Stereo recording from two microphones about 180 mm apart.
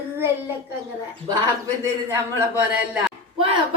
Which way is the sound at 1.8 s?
15° right (ahead or behind).